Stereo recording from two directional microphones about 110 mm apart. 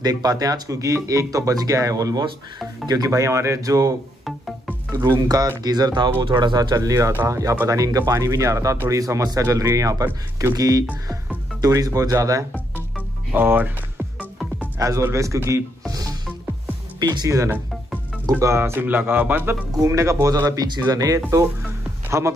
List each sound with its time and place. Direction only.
0.0 s speech: 35° right (ahead or behind)
4.9 s speech: 35° right (ahead or behind)
13.3 s speech: 15° right (ahead or behind)
14.8 s speech: 30° right (ahead or behind)
15.9 s music: 35° right (ahead or behind)
17.0 s speech: 35° right (ahead or behind); by 19.5 s 15° right (ahead or behind)
19.8 s speech: 25° right (ahead or behind)